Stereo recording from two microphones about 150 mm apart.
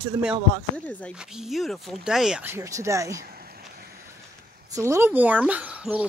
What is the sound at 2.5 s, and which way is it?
Speech, 20° right (ahead or behind).